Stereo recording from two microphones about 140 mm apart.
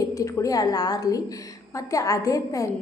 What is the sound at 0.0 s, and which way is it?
A woman's voice, 20° left (ahead or behind).